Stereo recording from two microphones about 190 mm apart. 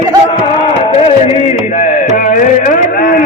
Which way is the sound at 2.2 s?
45° left (ahead or behind).